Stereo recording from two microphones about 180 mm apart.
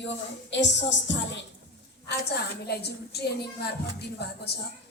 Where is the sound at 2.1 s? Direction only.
70° left (ahead or behind).